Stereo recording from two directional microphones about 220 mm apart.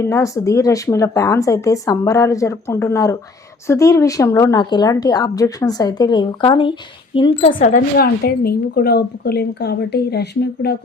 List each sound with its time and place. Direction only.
0.0 s a woman's voice: 15° left (ahead or behind)
7.6 s a woman's voice: 40° left (ahead or behind)